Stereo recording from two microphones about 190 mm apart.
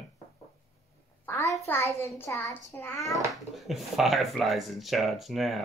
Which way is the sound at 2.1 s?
10° left (ahead or behind).